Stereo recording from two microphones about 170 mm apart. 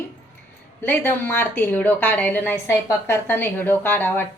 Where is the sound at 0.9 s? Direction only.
10° left (ahead or behind).